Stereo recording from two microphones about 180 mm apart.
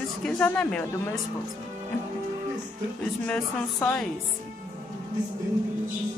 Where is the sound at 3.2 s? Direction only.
10° left (ahead or behind).